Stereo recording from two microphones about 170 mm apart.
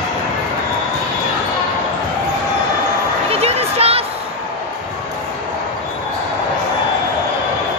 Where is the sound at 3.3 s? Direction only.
35° right (ahead or behind).